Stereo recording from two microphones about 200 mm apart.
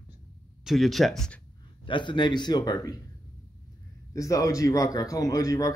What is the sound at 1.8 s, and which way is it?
A man's voice, 25° left (ahead or behind).